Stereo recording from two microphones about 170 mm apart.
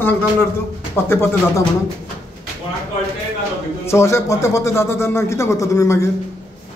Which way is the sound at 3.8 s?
15° left (ahead or behind).